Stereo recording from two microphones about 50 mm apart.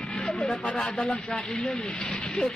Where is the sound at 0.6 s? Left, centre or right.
Left.